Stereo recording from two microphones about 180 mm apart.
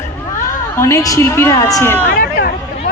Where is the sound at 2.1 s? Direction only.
60° left (ahead or behind).